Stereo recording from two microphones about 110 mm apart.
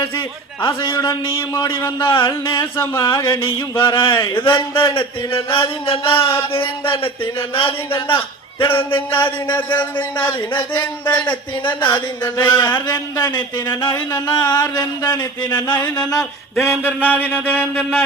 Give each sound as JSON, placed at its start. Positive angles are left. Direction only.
{"t": 0.6, "sound": "a man's voice", "side_deg": 50}
{"t": 2.7, "sound": "mantra", "side_deg": 25}
{"t": 3.2, "sound": "a man's voice", "side_deg": 50}
{"t": 4.9, "sound": "a sound", "side_deg": 55}
{"t": 6.8, "sound": "a man's voice", "side_deg": 55}
{"t": 11.9, "sound": "mantra", "side_deg": 20}
{"t": 12.4, "sound": "a man's voice", "side_deg": 45}
{"t": 12.9, "sound": "music", "side_deg": 40}
{"t": 16.6, "sound": "a sound", "side_deg": 20}